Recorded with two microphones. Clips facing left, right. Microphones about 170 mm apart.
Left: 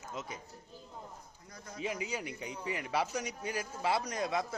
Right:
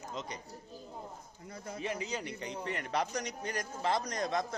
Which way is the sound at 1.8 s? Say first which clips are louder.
Left 1 dB; 10° left (ahead or behind).